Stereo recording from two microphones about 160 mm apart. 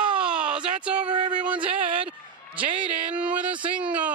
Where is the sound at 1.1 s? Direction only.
30° right (ahead or behind).